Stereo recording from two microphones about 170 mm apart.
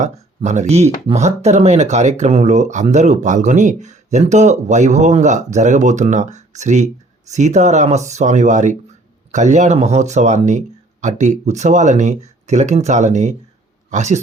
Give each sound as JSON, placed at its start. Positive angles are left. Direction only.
{"t": 0.0, "sound": "speech", "side_deg": -45}